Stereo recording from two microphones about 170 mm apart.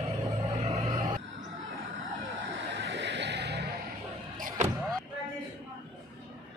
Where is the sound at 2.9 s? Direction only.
90° right.